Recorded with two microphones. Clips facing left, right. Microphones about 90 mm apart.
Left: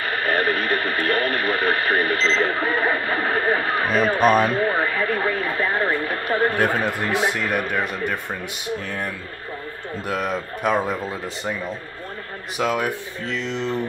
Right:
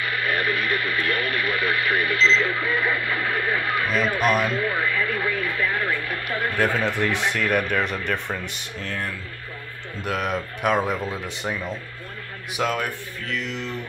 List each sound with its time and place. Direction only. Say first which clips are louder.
0.0 s speech: left 3 dB; 40° left (ahead or behind)
8.8 s speech: left 2 dB; 15° left (ahead or behind)
10.0 s speech: even; centre (ahead or behind)
13.3 s speech: left 4 dB; 30° left (ahead or behind)